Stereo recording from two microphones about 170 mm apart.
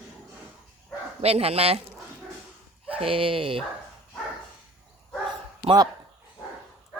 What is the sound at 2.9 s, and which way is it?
Speech, 35° right (ahead or behind).